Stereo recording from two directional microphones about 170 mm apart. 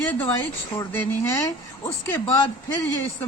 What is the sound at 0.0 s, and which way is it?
A man's voice, 10° left (ahead or behind).